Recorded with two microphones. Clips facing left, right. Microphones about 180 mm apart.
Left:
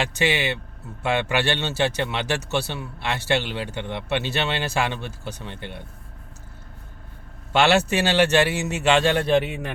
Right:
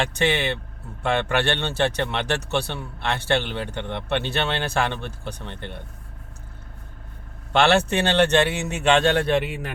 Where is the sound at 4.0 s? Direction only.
55° right (ahead or behind).